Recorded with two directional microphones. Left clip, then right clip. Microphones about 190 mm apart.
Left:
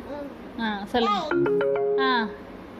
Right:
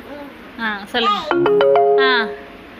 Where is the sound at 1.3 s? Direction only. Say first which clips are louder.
Right 10 dB; 65° right (ahead or behind).